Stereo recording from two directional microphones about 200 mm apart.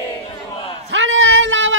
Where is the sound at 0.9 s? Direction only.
75° right (ahead or behind).